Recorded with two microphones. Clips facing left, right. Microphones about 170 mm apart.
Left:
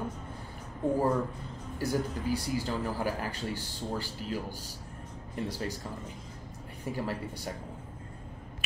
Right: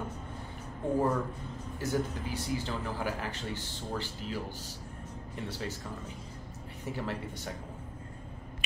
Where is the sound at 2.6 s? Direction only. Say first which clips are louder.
Left 3 dB; 40° left (ahead or behind).